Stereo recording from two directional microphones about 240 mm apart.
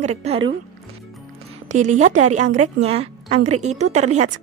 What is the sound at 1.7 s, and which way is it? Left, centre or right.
A woman's voice, right.